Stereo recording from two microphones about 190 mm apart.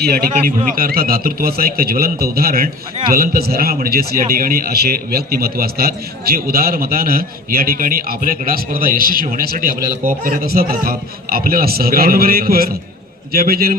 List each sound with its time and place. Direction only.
0.0 s a man's voice: 50° right (ahead or behind)